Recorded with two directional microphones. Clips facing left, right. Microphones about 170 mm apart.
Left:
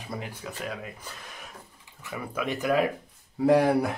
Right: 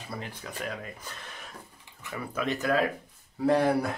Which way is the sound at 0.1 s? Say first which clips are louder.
Left 2 dB; 10° left (ahead or behind).